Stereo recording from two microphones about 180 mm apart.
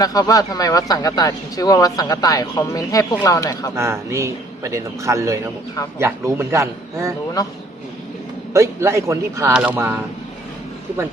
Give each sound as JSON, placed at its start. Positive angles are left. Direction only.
{"t": 0.0, "sound": "speech", "side_deg": 20}
{"t": 3.8, "sound": "a man's voice", "side_deg": -15}
{"t": 8.5, "sound": "a man's voice", "side_deg": -15}